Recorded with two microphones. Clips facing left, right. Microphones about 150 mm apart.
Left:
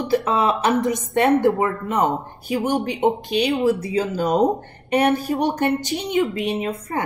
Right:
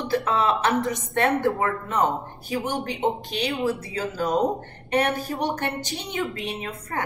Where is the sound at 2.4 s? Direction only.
15° left (ahead or behind).